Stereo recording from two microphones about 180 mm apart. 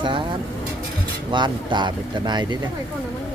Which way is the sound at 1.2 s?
25° right (ahead or behind).